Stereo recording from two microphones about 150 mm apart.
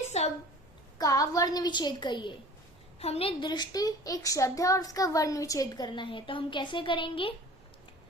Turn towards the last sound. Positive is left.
turn(degrees=35)  # may be behind; listen again after turning